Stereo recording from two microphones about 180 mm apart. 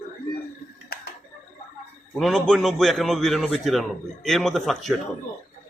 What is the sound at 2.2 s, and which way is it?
A man's voice, 5° left (ahead or behind).